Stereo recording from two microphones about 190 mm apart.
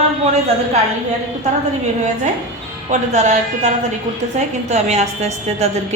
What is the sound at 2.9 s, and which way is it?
A woman's voice, 40° right (ahead or behind).